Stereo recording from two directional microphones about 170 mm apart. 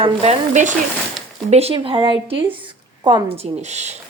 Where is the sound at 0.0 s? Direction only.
40° right (ahead or behind).